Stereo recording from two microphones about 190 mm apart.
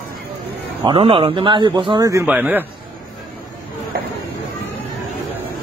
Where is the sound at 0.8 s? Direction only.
30° right (ahead or behind); by 2.6 s 10° right (ahead or behind).